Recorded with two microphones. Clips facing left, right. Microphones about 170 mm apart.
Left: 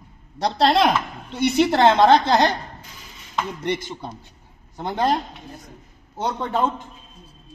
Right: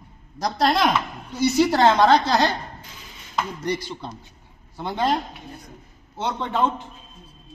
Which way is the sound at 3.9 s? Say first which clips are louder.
Left 1 dB; 10° left (ahead or behind).